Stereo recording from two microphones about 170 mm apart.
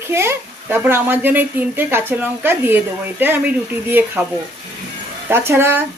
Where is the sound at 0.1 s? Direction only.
15° right (ahead or behind).